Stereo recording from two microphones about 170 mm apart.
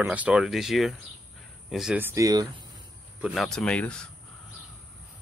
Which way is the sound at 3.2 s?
Centre (ahead or behind).